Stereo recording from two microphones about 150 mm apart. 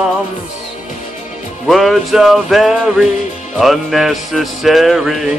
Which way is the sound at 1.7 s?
Centre (ahead or behind).